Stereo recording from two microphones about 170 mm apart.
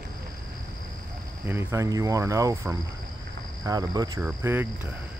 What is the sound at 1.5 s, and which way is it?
Speech, 15° right (ahead or behind).